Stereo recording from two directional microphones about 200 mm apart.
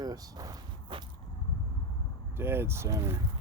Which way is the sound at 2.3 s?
10° right (ahead or behind).